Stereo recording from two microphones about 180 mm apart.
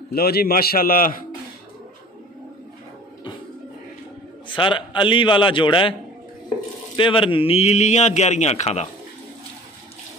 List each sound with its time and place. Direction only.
0.1 s a man's voice: 60° left (ahead or behind)
4.5 s a man's voice: 25° left (ahead or behind)
7.0 s a man's voice: 30° left (ahead or behind)